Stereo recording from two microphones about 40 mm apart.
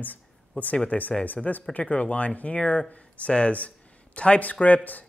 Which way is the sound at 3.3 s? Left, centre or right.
Left.